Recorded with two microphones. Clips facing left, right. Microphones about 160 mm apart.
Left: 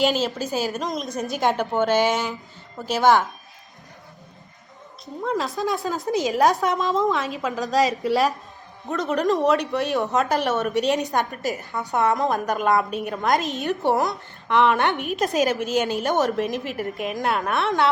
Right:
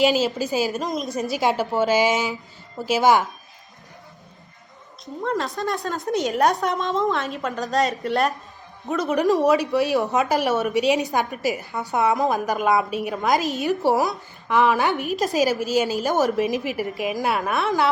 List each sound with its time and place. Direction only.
0.0 s a woman's voice: centre (ahead or behind)
5.2 s a woman's voice: centre (ahead or behind)